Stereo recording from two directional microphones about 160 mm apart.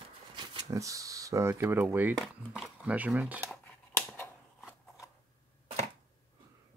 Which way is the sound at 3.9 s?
10° left (ahead or behind).